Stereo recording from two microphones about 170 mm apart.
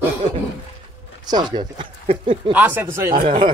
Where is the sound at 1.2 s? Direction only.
25° right (ahead or behind).